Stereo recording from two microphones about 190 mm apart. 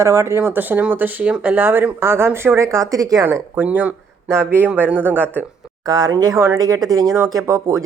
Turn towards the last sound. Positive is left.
turn(degrees=-15)  # may be behind; listen again after turning